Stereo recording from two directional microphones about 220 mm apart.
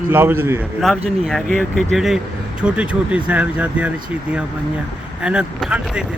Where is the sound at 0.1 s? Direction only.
10° right (ahead or behind).